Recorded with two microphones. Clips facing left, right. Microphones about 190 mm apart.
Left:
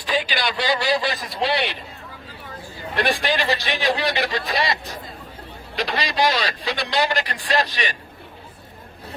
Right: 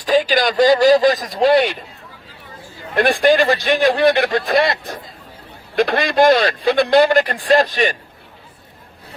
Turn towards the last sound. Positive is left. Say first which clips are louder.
# right 8 dB
turn(degrees=-50)  # may be behind; listen again after turning